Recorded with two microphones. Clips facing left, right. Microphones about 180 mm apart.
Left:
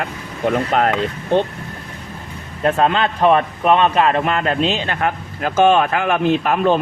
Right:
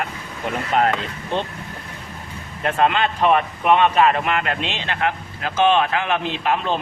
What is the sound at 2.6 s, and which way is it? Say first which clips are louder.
A man's voice: left 3 dB; 35° left (ahead or behind).